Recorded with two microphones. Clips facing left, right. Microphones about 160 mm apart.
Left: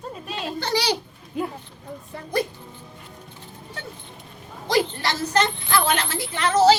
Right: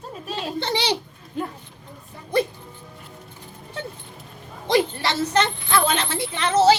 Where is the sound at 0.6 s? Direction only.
25° right (ahead or behind).